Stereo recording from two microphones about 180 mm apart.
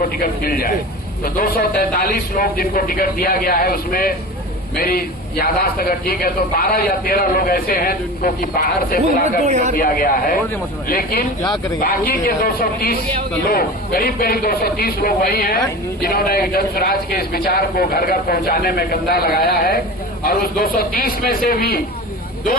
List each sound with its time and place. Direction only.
0.0 s a man's voice: 55° left (ahead or behind)
9.2 s speech: 40° right (ahead or behind)
9.7 s a man's voice: 55° left (ahead or behind)